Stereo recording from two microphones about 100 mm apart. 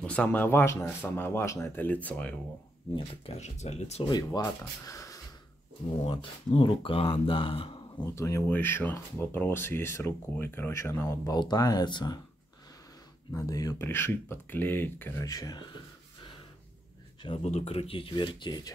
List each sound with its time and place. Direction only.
0.0 s speech: 10° left (ahead or behind); by 1.9 s 30° left (ahead or behind)
1.9 s speech: 15° left (ahead or behind)
3.0 s speech: 85° left
4.0 s speech: 40° left (ahead or behind)
4.8 s a sound: 35° left (ahead or behind)
5.9 s speech: 75° left (ahead or behind)
8.0 s speech: 30° left (ahead or behind)
11.3 s speech: 45° left (ahead or behind)
13.3 s speech: 35° left (ahead or behind)
13.7 s speech: 25° left (ahead or behind)
15.2 s speech: 40° left (ahead or behind)
17.4 s speech: 90° left; by 18.7 s 45° left (ahead or behind)